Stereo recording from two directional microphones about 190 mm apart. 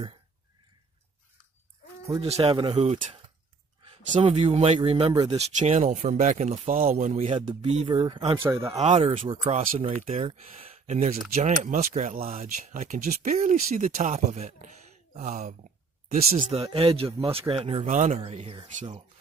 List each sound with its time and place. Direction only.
2.1 s speech: 35° right (ahead or behind)
4.2 s speech: 35° right (ahead or behind)
5.4 s speech: 35° right (ahead or behind)
8.5 s speech: 15° right (ahead or behind)
8.7 s speech: 35° right (ahead or behind)